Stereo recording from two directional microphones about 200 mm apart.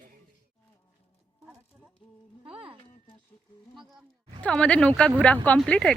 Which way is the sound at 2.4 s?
30° right (ahead or behind).